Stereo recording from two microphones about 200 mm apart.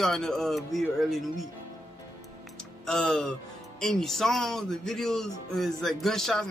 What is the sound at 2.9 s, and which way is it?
Speech, 5° left (ahead or behind).